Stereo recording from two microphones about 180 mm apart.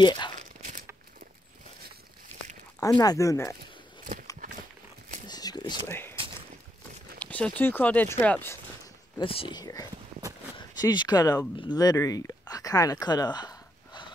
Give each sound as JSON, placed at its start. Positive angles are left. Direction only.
{"t": 0.0, "sound": "speech", "side_deg": 25}
{"t": 0.4, "sound": "tearing", "side_deg": -45}
{"t": 3.0, "sound": "speech", "side_deg": 20}
{"t": 5.2, "sound": "a sound", "side_deg": 20}
{"t": 5.9, "sound": "speech", "side_deg": 10}
{"t": 7.2, "sound": "speech", "side_deg": 10}
{"t": 9.2, "sound": "speech", "side_deg": 30}